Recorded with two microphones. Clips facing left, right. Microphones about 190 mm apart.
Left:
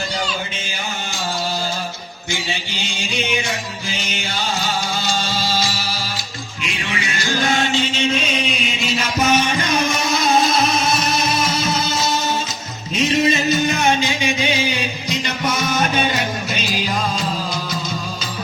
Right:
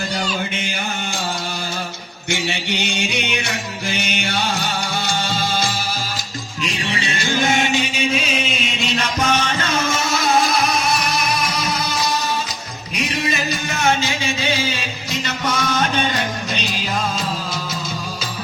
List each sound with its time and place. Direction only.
2.3 s music: 70° right (ahead or behind)
6.9 s chant: 30° right (ahead or behind); by 12.1 s 25° left (ahead or behind)
12.9 s music: 25° left (ahead or behind)